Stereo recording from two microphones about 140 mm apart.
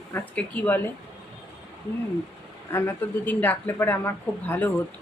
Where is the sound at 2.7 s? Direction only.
15° left (ahead or behind).